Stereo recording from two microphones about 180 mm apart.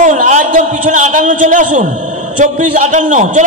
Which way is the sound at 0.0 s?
40° right (ahead or behind).